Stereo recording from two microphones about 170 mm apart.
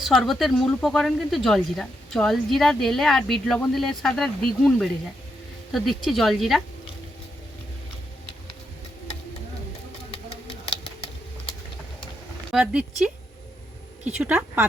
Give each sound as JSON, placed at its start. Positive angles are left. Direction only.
{"t": 0.0, "sound": "speech", "side_deg": 0}
{"t": 10.7, "sound": "a sound", "side_deg": 35}
{"t": 12.5, "sound": "speech", "side_deg": -5}